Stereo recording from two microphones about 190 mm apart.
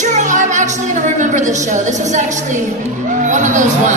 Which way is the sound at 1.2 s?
40° right (ahead or behind).